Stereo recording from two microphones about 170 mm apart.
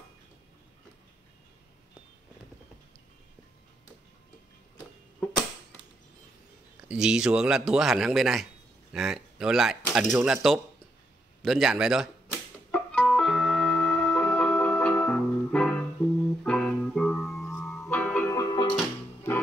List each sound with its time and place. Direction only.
6.9 s speech: 5° right (ahead or behind)
12.7 s music: 5° left (ahead or behind); by 18.8 s 25° left (ahead or behind)